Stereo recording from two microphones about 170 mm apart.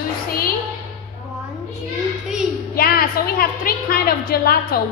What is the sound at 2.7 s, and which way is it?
A woman's voice, 60° left (ahead or behind).